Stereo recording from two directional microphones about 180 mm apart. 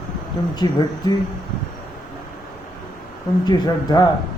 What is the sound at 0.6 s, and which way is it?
Speech, 25° left (ahead or behind).